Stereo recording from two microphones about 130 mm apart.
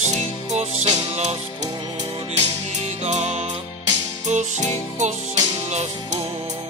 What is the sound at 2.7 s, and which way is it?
Music, 60° right (ahead or behind).